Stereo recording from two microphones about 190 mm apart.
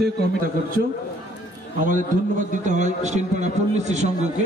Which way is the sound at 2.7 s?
40° right (ahead or behind).